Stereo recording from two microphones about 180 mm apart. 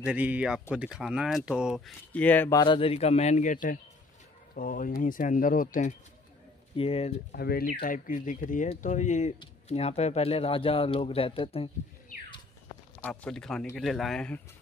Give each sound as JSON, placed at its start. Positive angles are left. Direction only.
{"t": 0.0, "sound": "speech", "side_deg": -5}
{"t": 2.1, "sound": "speech", "side_deg": 10}
{"t": 2.6, "sound": "speech", "side_deg": 30}
{"t": 6.8, "sound": "speech", "side_deg": 35}
{"t": 7.3, "sound": "speech", "side_deg": 60}
{"t": 7.8, "sound": "speech", "side_deg": 45}
{"t": 13.0, "sound": "speech", "side_deg": 5}